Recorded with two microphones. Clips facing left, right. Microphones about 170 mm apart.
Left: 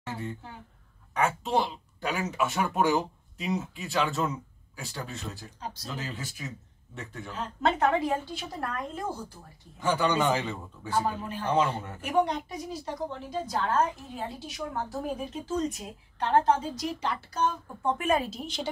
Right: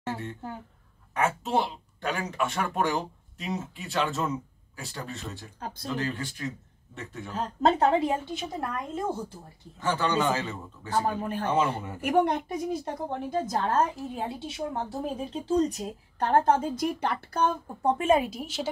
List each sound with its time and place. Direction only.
1.1 s speech: centre (ahead or behind)
5.6 s a woman's voice: 55° right (ahead or behind)
5.9 s speech: 5° left (ahead or behind)
7.3 s speech: 35° right (ahead or behind)
8.3 s a woman's voice: 20° right (ahead or behind)
9.8 s a man's voice: 10° left (ahead or behind)
11.1 s speech: 55° right (ahead or behind)
11.4 s speech: 5° right (ahead or behind)
12.0 s a woman's voice: 55° right (ahead or behind)
13.6 s speech: 35° right (ahead or behind); by 17.6 s 55° right (ahead or behind)
17.8 s a woman's voice: 25° right (ahead or behind); by 18.7 s 5° right (ahead or behind)